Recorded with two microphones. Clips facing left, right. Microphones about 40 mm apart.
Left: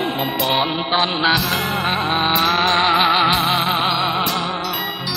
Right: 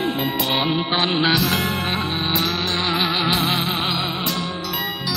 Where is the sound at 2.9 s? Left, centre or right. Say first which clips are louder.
Left 6 dB; left.